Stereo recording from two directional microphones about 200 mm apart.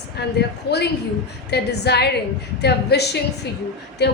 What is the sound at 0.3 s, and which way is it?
A woman's voice, 55° left (ahead or behind).